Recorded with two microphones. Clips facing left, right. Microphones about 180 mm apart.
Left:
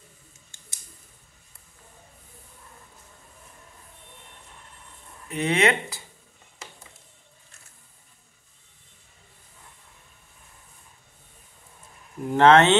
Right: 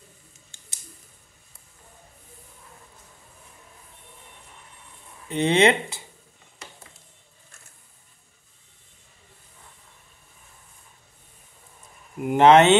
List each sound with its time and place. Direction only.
5.3 s speech: 25° right (ahead or behind)
12.2 s speech: 15° right (ahead or behind)